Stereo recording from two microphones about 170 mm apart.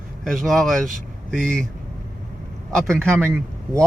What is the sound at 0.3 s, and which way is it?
Speech, centre (ahead or behind).